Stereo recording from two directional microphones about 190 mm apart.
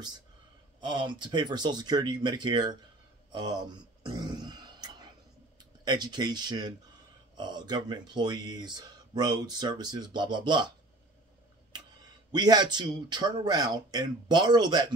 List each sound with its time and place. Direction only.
0.7 s speech: 25° right (ahead or behind)
3.3 s a sound: 25° right (ahead or behind)
5.9 s speech: 20° right (ahead or behind)
12.3 s speech: 20° right (ahead or behind)